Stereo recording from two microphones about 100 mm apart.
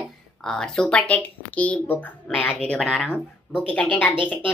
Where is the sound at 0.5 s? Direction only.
5° left (ahead or behind).